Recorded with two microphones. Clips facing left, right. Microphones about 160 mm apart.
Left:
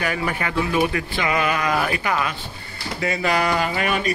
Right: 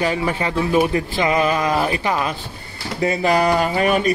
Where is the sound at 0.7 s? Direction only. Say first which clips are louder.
Right 6 dB; 35° right (ahead or behind).